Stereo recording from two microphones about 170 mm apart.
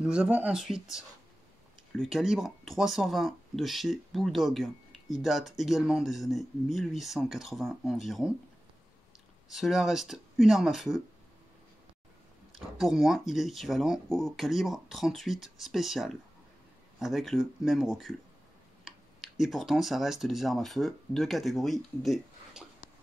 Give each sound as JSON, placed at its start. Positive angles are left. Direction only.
{"t": 0.0, "sound": "speech", "side_deg": -5}
{"t": 9.5, "sound": "speech", "side_deg": 0}
{"t": 12.5, "sound": "speech", "side_deg": 0}